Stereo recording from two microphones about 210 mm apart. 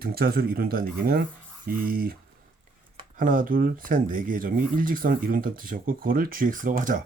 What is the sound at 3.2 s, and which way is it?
Speech, 40° right (ahead or behind).